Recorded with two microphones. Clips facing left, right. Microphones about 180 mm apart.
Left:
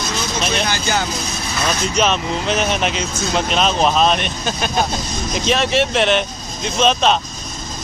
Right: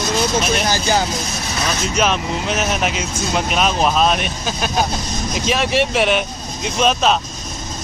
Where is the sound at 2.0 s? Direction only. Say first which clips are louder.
Even; 5° right (ahead or behind).